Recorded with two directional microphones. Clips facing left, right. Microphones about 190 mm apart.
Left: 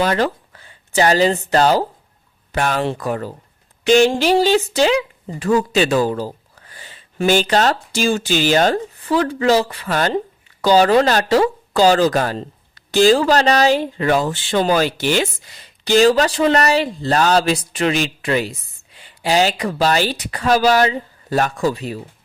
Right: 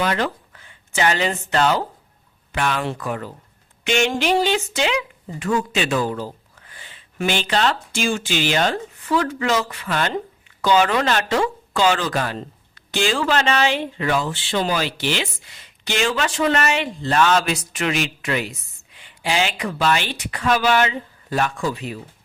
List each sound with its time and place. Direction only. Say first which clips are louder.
0.0 s speech: left 4 dB; 35° left (ahead or behind)